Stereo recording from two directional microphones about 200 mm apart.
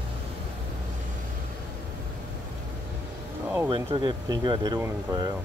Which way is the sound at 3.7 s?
25° right (ahead or behind).